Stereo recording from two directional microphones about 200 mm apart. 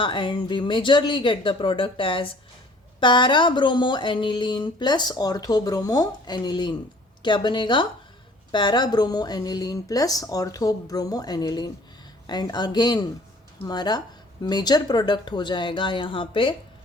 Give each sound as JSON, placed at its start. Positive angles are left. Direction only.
{"t": 0.0, "sound": "speech", "side_deg": 25}